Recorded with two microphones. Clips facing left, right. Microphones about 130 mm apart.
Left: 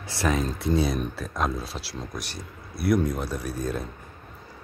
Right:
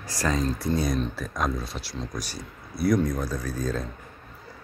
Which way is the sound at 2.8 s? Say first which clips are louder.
Even; 5° left (ahead or behind).